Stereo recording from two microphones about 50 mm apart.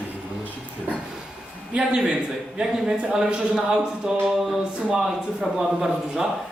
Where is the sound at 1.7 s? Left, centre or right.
Centre.